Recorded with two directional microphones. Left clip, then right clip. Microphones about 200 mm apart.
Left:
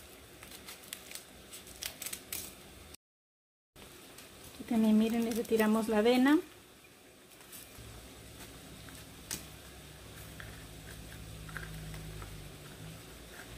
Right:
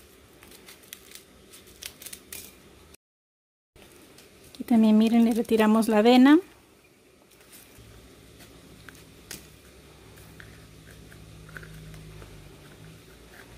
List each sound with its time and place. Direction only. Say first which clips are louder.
1.8 s scissors: even; centre (ahead or behind)
4.6 s speech: right 8 dB; 50° right (ahead or behind)